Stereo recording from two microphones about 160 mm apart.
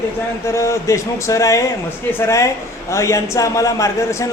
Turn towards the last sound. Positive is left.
turn(degrees=20)  # may be behind; listen again after turning